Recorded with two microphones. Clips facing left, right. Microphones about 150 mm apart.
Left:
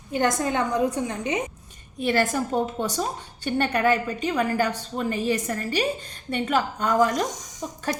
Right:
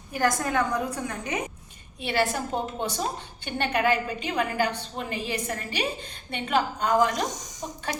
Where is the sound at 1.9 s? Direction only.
45° left (ahead or behind).